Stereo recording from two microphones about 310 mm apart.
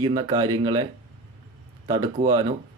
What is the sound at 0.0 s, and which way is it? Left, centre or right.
Speech, centre.